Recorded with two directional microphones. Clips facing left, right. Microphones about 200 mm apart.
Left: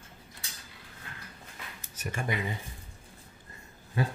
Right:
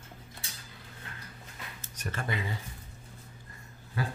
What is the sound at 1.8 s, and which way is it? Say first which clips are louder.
Speech: left 2 dB; 15° left (ahead or behind).